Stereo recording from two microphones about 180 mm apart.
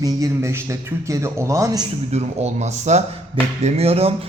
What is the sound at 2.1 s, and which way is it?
A man's voice, 40° right (ahead or behind).